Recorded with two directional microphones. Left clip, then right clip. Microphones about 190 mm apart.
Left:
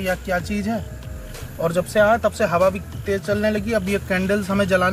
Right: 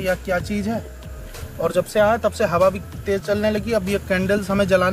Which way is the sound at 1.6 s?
35° right (ahead or behind).